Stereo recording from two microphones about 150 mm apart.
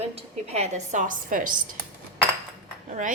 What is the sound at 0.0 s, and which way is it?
A woman's voice, 45° right (ahead or behind).